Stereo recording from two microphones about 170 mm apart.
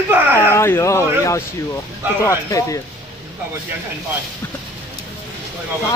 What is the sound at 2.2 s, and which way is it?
Speech, 20° left (ahead or behind).